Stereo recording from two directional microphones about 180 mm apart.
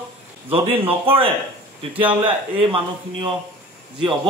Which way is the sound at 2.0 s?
30° right (ahead or behind).